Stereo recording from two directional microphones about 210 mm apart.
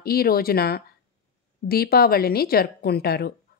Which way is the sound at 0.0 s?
45° left (ahead or behind).